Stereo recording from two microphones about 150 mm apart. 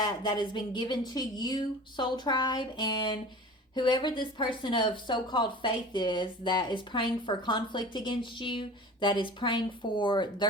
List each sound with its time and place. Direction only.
0.0 s speech: 30° left (ahead or behind)